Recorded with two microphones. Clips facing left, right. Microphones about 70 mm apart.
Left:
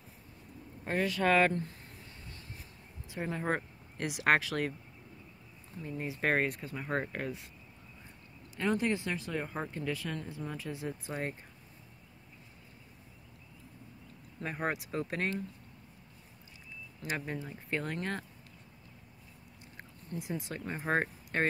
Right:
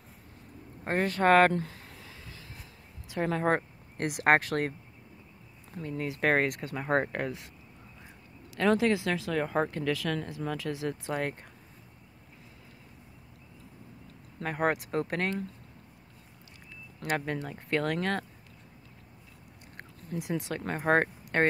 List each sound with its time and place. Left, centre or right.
0.8 s speech: right
1.5 s a sound: right
3.1 s speech: right
3.5 s speech: right
5.8 s speech: right
6.8 s speech: right
8.5 s speech: right
14.4 s speech: right
17.3 s speech: right
20.0 s speech: right